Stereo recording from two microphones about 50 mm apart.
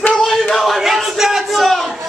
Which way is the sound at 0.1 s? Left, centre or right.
Centre.